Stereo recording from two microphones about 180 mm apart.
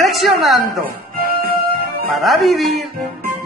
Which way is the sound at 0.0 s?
Centre (ahead or behind).